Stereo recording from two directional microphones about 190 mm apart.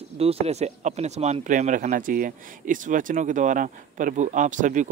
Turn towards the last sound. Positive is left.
turn(degrees=-40)  # may be behind; listen again after turning